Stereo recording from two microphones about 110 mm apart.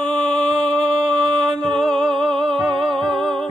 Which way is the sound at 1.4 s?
5° left (ahead or behind).